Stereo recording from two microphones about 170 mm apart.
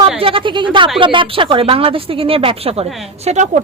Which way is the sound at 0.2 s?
30° right (ahead or behind).